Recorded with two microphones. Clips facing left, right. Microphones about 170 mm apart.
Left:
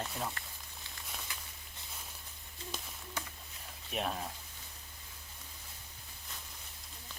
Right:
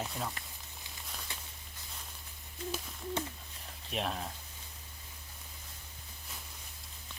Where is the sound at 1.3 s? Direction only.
25° right (ahead or behind).